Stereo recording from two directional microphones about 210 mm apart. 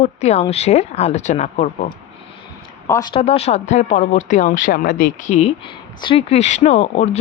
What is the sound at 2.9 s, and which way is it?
Speech, 20° left (ahead or behind).